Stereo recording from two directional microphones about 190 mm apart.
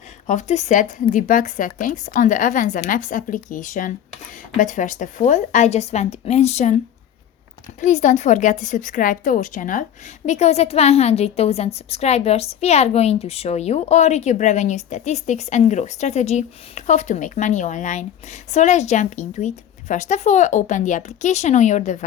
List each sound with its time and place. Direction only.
0.3 s a woman's voice: 40° left (ahead or behind)
7.8 s a woman's voice: 40° left (ahead or behind)